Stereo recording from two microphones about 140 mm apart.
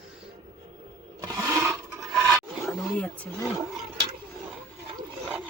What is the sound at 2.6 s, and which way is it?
Roaring cats, 10° left (ahead or behind).